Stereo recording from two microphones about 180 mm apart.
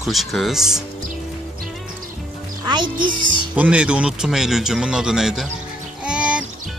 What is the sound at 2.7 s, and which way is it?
Speech, 25° right (ahead or behind).